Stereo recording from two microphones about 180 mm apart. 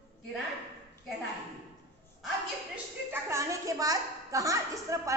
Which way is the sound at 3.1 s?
15° right (ahead or behind).